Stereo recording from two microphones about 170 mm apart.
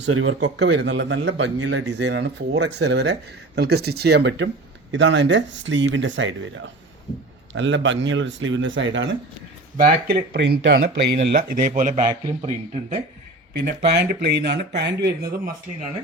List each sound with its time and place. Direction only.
0.0 s a man's voice: 90° right
9.7 s speech: 60° right (ahead or behind)
13.6 s speech: 80° right